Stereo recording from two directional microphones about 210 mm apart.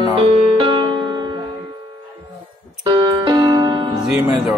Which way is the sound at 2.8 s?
20° right (ahead or behind).